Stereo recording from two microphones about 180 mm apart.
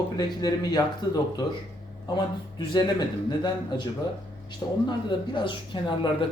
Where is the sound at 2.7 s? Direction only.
25° left (ahead or behind).